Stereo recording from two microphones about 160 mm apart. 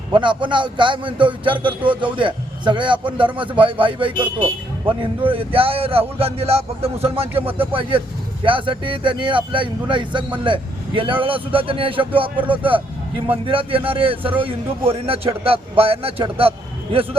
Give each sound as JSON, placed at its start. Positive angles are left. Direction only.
{"t": 0.1, "sound": "speech", "side_deg": -30}